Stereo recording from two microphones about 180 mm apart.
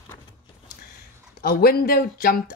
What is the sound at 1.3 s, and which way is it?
Speech, 55° left (ahead or behind).